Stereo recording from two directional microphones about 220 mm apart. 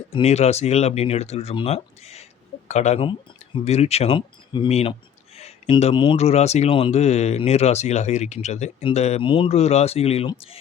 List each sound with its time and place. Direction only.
0.1 s speech: 30° left (ahead or behind)